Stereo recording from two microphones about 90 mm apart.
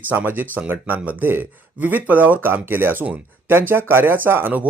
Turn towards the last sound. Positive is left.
turn(degrees=-25)  # may be behind; listen again after turning